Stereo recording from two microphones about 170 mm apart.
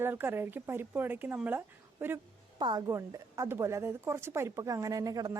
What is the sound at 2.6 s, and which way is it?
A woman's voice, 25° right (ahead or behind).